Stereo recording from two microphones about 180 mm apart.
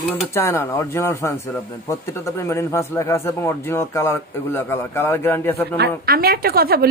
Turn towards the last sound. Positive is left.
turn(degrees=-60)  # may be behind; listen again after turning